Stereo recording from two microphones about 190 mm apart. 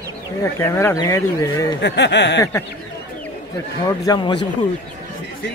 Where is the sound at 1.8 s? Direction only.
65° left (ahead or behind).